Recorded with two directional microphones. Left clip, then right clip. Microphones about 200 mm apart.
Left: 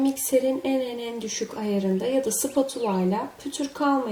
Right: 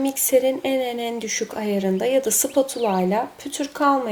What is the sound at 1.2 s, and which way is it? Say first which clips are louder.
Speech: right 4 dB; 15° right (ahead or behind).